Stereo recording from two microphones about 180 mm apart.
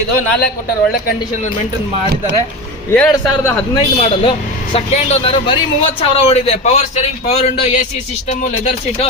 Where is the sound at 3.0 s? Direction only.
20° left (ahead or behind).